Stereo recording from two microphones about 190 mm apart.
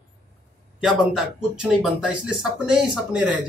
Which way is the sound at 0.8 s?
Centre (ahead or behind).